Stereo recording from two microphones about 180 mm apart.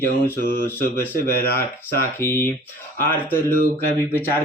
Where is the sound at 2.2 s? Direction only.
15° left (ahead or behind).